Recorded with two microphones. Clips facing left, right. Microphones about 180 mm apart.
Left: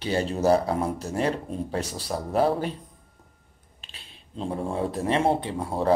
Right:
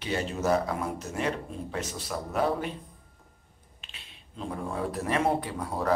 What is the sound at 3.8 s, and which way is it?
Speech, 30° left (ahead or behind).